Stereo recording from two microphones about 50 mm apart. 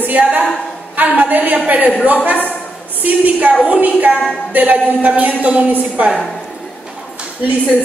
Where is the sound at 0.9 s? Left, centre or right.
Right.